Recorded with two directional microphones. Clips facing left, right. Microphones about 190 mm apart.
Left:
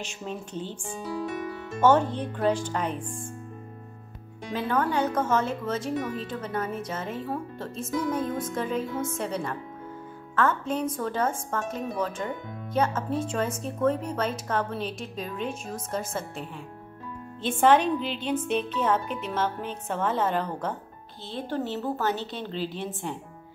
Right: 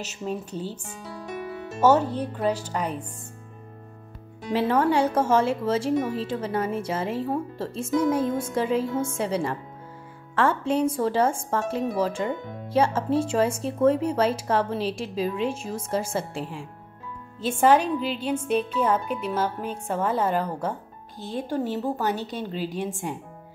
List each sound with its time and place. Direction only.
0.2 s speech: 5° right (ahead or behind)
1.8 s speech: 5° right (ahead or behind)
4.6 s a woman's voice: 30° right (ahead or behind)
17.4 s speech: 10° right (ahead or behind)